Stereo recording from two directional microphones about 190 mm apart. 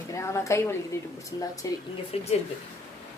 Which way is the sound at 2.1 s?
30° left (ahead or behind).